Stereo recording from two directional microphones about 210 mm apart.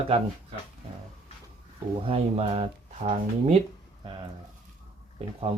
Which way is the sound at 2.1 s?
30° right (ahead or behind).